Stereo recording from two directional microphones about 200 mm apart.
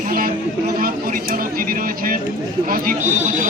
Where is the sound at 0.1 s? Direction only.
45° right (ahead or behind).